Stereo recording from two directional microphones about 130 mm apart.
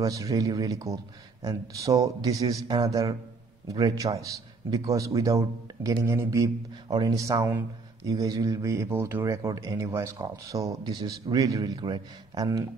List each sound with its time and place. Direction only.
0.0 s speech: 25° right (ahead or behind)